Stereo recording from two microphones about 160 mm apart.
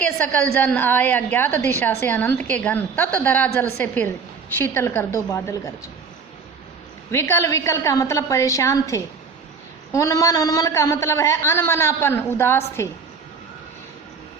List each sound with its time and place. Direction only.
0.0 s a woman's voice: 10° left (ahead or behind)
7.1 s a man's voice: 15° left (ahead or behind)